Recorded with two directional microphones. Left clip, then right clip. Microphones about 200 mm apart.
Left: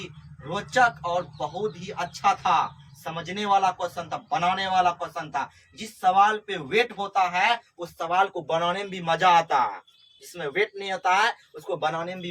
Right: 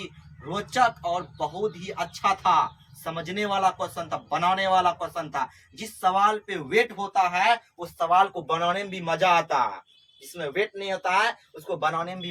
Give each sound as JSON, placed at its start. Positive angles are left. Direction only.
{"t": 0.5, "sound": "a man's voice", "side_deg": -15}